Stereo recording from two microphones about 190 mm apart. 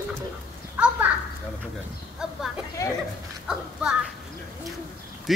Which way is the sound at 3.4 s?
5° right (ahead or behind).